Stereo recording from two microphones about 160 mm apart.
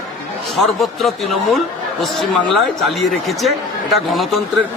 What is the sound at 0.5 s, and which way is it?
Speech, centre (ahead or behind).